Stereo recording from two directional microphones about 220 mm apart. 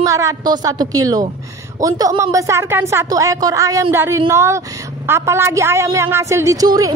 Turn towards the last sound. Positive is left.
turn(degrees=-15)  # may be behind; listen again after turning